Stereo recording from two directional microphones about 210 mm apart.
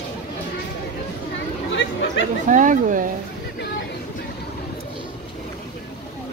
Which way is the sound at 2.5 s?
40° right (ahead or behind).